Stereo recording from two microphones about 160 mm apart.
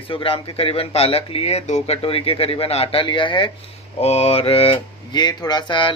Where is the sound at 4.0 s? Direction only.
40° left (ahead or behind).